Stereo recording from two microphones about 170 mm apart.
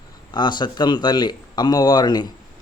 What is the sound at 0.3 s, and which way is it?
Speech, 25° left (ahead or behind).